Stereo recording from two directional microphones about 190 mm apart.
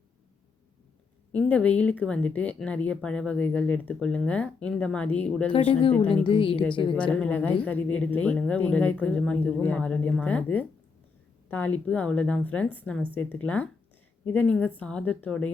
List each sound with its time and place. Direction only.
1.3 s speech: 5° left (ahead or behind)
5.5 s a woman's voice: 25° left (ahead or behind)
6.9 s speech: 5° left (ahead or behind)